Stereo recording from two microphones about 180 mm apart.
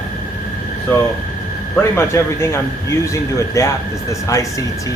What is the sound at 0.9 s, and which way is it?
Speech, 10° left (ahead or behind).